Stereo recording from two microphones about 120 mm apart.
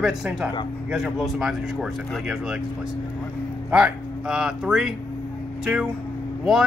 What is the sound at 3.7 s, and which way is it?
Speech, 10° right (ahead or behind).